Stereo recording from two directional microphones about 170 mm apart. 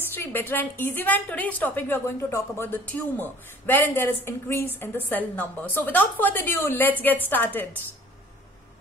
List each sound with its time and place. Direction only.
0.1 s a woman's voice: 10° left (ahead or behind)